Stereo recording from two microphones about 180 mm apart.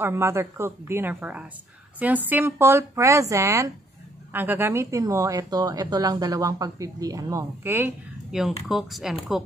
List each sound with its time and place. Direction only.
0.0 s speech: 15° right (ahead or behind)